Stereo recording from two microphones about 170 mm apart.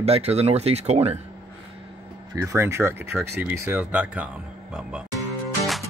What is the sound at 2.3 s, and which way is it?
Speech, 15° right (ahead or behind).